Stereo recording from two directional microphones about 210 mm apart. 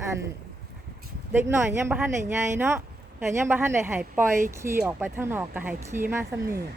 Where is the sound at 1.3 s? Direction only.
10° right (ahead or behind).